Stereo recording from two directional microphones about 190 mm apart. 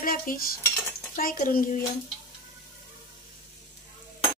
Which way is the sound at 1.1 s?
45° left (ahead or behind).